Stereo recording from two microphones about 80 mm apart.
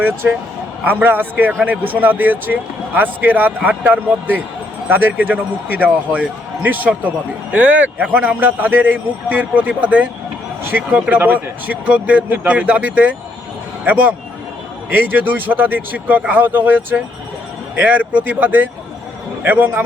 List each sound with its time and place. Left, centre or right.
0.0 s speech: right